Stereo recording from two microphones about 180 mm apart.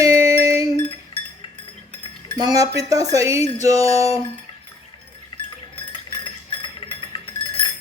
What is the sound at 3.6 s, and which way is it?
Music, 20° right (ahead or behind).